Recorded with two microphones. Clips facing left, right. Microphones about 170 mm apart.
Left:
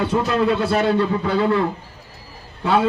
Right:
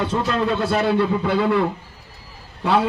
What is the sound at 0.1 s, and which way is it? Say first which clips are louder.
A man's voice: left 3 dB; 5° left (ahead or behind).